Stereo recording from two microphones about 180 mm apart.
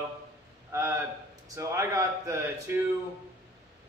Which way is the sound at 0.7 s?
15° right (ahead or behind).